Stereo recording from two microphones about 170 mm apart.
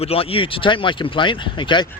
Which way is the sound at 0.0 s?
35° left (ahead or behind).